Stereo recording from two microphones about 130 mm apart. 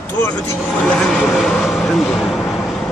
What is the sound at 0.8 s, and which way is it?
Vehicle, 5° left (ahead or behind).